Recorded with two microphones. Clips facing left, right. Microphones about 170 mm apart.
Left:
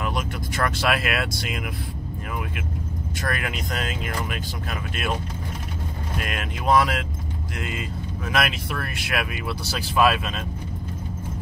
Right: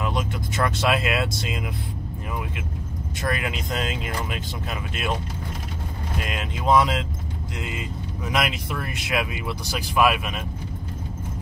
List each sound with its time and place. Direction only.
0.0 s speech: 20° right (ahead or behind)
3.2 s speech: 20° right (ahead or behind)
6.2 s speech: 20° right (ahead or behind)